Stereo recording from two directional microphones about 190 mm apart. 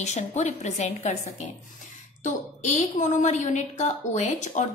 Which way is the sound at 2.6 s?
40° left (ahead or behind).